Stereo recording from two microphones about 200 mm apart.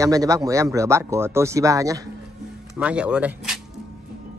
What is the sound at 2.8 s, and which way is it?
Speech, 5° right (ahead or behind).